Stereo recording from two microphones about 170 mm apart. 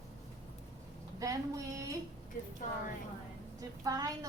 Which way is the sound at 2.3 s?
55° left (ahead or behind).